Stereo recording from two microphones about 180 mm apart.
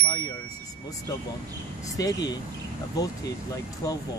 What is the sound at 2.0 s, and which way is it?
Speech, 20° left (ahead or behind).